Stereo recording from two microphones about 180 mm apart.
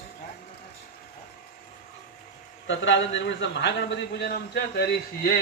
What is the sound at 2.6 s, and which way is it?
A man's voice, 90° left.